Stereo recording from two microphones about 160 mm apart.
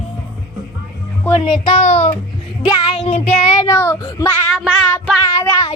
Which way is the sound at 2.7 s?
30° left (ahead or behind).